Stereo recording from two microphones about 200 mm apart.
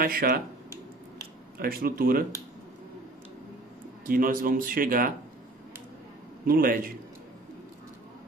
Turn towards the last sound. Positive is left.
turn(degrees=-45)  # may be behind; listen again after turning